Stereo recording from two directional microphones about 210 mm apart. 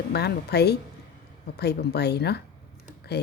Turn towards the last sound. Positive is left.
turn(degrees=50)  # may be behind; listen again after turning